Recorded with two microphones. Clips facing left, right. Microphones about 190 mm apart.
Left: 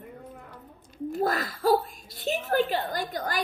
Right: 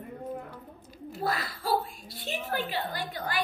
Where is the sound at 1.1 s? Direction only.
45° left (ahead or behind).